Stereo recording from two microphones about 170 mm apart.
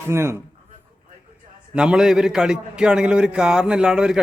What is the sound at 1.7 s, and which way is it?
A man's voice, 5° right (ahead or behind).